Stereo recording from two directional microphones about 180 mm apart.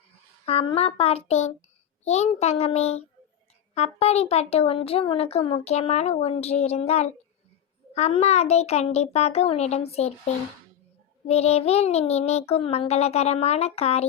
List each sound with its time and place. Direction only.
0.4 s speech: 35° left (ahead or behind)
11.3 s speech: 35° left (ahead or behind)